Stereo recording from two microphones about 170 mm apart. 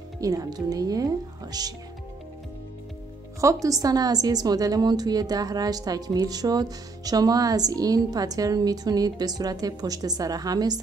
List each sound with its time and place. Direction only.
0.2 s a woman's voice: 20° right (ahead or behind)
3.3 s a woman's voice: 20° right (ahead or behind)